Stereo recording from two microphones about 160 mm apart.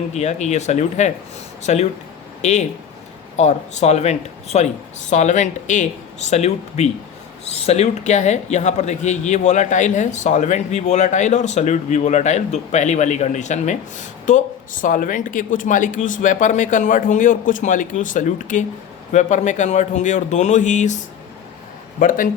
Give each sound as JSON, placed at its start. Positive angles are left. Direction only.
{"t": 0.1, "sound": "speech", "side_deg": 45}